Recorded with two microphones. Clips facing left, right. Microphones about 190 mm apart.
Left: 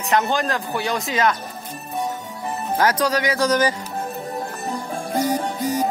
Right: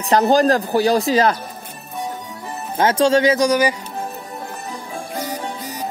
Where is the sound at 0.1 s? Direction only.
35° right (ahead or behind).